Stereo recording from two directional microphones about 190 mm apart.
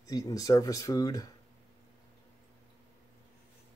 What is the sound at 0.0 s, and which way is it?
Speech, 20° left (ahead or behind).